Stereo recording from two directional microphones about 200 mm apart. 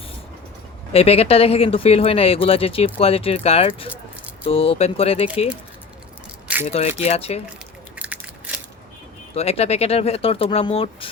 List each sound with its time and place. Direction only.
0.9 s speech: 30° left (ahead or behind)
6.7 s speech: 30° left (ahead or behind)
7.9 s a sound: 5° right (ahead or behind)
9.3 s speech: 30° left (ahead or behind)